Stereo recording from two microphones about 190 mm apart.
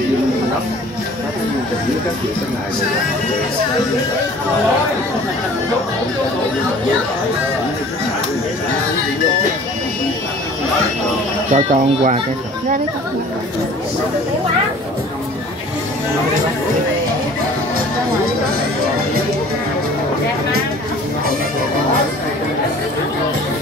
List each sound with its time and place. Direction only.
11.5 s speech: 40° right (ahead or behind)